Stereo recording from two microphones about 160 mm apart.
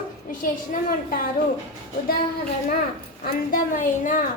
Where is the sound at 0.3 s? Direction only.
60° left (ahead or behind).